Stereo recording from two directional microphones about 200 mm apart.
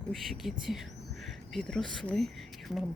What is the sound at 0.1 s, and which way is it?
Speech, centre (ahead or behind).